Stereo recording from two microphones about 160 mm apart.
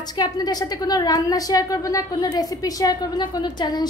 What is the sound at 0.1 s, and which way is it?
A woman's voice, 25° left (ahead or behind).